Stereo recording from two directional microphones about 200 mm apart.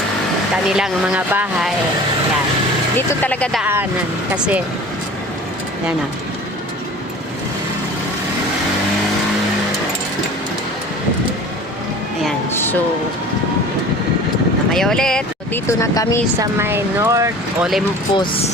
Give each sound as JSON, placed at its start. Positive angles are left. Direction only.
{"t": 0.5, "sound": "speech", "side_deg": -5}
{"t": 3.1, "sound": "speech", "side_deg": 5}
{"t": 3.6, "sound": "speech", "side_deg": -10}
{"t": 12.5, "sound": "a sound", "side_deg": 10}
{"t": 14.7, "sound": "speech", "side_deg": 0}
{"t": 15.6, "sound": "speech", "side_deg": 15}
{"t": 16.4, "sound": "speech", "side_deg": -10}
{"t": 17.6, "sound": "speech", "side_deg": 0}
{"t": 18.1, "sound": "speech", "side_deg": 25}